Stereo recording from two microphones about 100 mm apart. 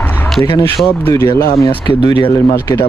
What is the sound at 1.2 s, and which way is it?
Speech, 45° left (ahead or behind).